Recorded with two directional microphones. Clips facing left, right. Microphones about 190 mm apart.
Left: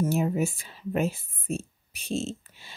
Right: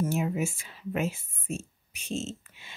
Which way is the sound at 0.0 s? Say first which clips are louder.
Left 3 dB; 35° left (ahead or behind).